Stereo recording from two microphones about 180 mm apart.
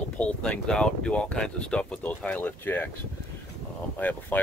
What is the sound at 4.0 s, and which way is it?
Speech, 10° left (ahead or behind).